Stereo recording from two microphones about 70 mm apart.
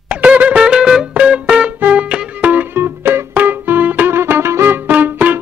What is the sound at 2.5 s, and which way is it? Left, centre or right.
Music, right.